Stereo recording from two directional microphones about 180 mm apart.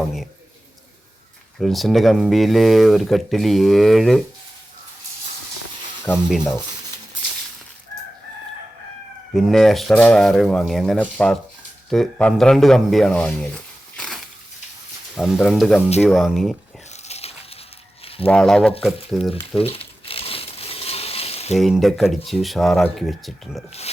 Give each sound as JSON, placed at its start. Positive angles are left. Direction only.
{"t": 1.5, "sound": "speech", "side_deg": 0}
{"t": 6.1, "sound": "stir", "side_deg": 10}
{"t": 9.3, "sound": "speech", "side_deg": 0}
{"t": 17.0, "sound": "dog", "side_deg": 35}
{"t": 18.0, "sound": "a sound", "side_deg": 30}
{"t": 18.3, "sound": "speech", "side_deg": 5}
{"t": 19.3, "sound": "crumpling", "side_deg": 30}
{"t": 21.6, "sound": "speech", "side_deg": 0}